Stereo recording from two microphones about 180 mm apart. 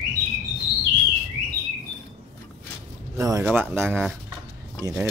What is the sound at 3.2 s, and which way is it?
Speech, 15° right (ahead or behind).